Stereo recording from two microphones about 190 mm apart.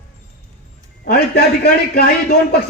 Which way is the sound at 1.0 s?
50° left (ahead or behind).